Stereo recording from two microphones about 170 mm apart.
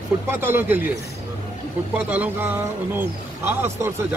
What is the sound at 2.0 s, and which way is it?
A man's voice, 10° right (ahead or behind).